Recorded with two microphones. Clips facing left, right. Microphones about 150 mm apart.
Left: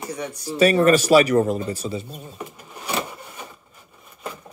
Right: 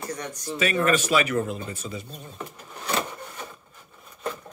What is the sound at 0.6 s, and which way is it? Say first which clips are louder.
Speech: left 7 dB; 40° left (ahead or behind).